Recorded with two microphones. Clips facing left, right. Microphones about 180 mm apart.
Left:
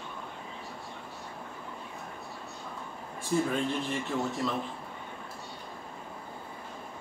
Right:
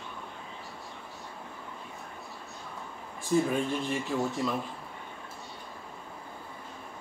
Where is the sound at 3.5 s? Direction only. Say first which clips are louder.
Right 1 dB; 15° right (ahead or behind).